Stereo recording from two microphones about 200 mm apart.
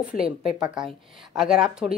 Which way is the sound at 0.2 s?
5° right (ahead or behind).